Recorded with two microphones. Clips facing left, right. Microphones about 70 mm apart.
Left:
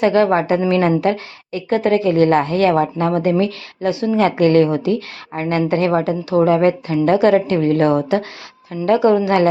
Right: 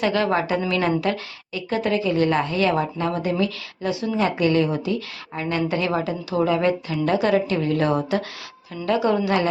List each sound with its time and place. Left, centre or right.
0.0 s a woman's voice: left
8.7 s a woman's voice: left
9.0 s a woman's voice: left